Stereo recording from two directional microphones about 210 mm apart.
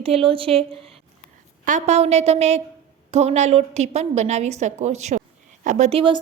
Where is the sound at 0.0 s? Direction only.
25° right (ahead or behind).